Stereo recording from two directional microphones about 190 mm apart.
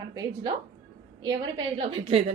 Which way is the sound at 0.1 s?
20° right (ahead or behind).